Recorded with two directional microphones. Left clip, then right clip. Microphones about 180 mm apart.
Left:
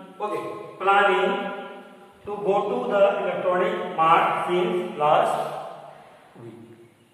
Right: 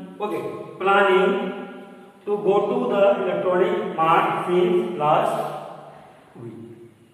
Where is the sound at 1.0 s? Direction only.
Centre (ahead or behind).